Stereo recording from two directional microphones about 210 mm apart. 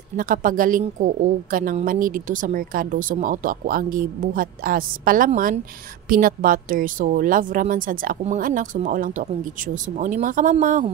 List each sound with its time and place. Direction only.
0.2 s a woman's voice: 40° right (ahead or behind)